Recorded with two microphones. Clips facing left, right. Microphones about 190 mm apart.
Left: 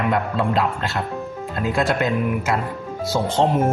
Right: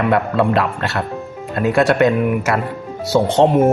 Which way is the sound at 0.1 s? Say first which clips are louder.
Right 5 dB; 65° right (ahead or behind).